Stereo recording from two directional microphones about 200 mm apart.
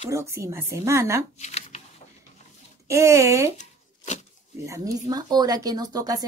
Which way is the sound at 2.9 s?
15° right (ahead or behind).